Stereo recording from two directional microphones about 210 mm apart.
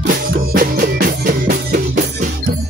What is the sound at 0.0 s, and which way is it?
Music, 40° right (ahead or behind).